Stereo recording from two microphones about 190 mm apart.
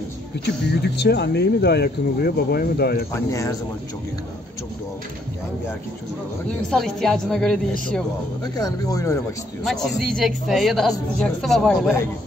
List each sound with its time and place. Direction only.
0.9 s speech: 65° left (ahead or behind)
3.1 s speech: 15° left (ahead or behind)
6.7 s a man's voice: centre (ahead or behind)
8.5 s speech: 20° left (ahead or behind)
9.7 s a man's voice: centre (ahead or behind)